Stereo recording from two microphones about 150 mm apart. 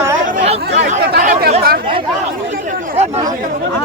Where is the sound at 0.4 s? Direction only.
50° right (ahead or behind).